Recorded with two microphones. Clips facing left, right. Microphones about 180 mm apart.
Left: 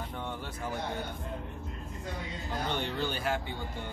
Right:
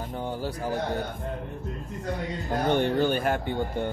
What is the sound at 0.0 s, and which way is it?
Bird, 35° right (ahead or behind).